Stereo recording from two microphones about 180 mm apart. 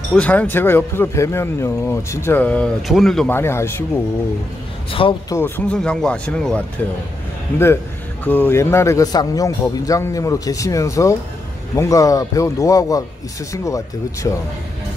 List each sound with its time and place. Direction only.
0.1 s speech: 5° left (ahead or behind)
5.0 s speech: 30° left (ahead or behind)
5.3 s speech: 10° left (ahead or behind)